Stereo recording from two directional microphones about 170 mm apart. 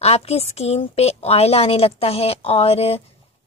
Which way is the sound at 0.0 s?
40° left (ahead or behind).